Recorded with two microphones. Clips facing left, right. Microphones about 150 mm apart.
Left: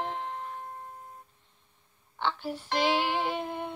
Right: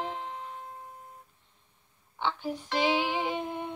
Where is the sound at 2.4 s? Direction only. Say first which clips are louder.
Right 1 dB; 5° left (ahead or behind).